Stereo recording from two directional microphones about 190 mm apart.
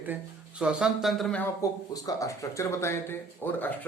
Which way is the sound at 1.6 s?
20° left (ahead or behind).